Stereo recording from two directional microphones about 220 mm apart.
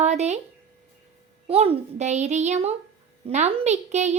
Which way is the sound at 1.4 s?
25° right (ahead or behind).